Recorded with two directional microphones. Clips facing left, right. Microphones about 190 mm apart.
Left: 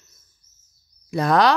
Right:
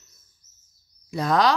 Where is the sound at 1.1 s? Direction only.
65° left (ahead or behind).